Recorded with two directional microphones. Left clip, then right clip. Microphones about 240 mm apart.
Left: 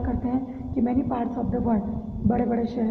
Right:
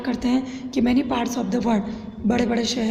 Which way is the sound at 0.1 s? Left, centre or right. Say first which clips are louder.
Right 6 dB; right.